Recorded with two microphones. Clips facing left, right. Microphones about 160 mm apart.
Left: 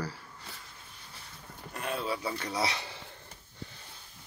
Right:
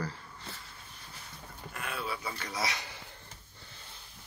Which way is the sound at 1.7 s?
35° left (ahead or behind).